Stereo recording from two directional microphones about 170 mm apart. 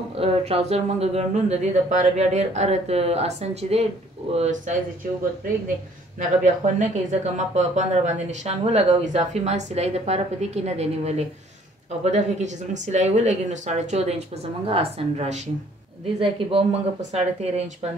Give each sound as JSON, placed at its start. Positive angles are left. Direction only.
{"t": 0.1, "sound": "speech", "side_deg": -35}
{"t": 6.1, "sound": "speech", "side_deg": -45}